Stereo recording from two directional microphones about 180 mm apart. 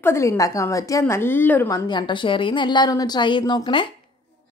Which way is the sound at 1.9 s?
25° left (ahead or behind).